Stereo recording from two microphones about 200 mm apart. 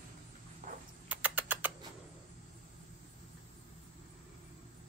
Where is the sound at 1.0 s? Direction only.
10° right (ahead or behind).